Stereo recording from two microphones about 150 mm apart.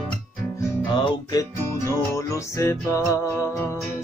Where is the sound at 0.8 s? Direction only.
30° left (ahead or behind); by 3.8 s 15° left (ahead or behind).